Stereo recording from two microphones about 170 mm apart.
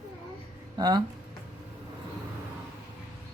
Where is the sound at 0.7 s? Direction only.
25° right (ahead or behind).